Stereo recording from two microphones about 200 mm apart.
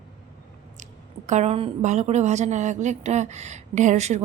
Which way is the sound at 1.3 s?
35° right (ahead or behind).